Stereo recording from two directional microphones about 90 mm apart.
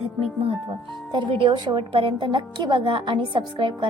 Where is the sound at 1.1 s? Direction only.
65° right (ahead or behind).